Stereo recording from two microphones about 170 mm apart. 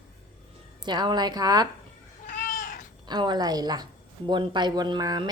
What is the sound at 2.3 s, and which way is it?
Cat, 50° left (ahead or behind).